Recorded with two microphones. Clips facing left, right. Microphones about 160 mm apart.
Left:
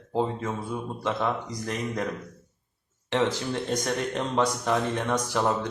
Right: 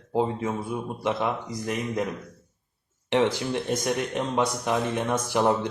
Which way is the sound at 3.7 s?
15° right (ahead or behind).